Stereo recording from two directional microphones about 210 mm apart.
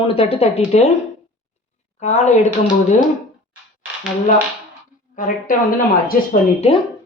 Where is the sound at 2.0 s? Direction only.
35° left (ahead or behind).